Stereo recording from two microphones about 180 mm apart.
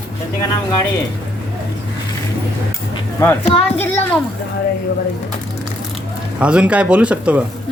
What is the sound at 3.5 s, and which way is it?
Speech, 30° left (ahead or behind).